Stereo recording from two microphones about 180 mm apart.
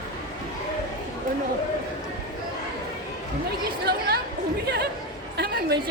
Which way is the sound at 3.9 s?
60° right (ahead or behind).